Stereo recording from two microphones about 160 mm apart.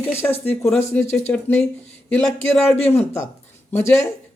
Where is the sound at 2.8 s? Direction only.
15° left (ahead or behind).